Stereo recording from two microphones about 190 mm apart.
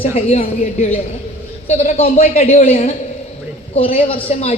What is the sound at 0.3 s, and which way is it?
A woman's voice, 35° left (ahead or behind).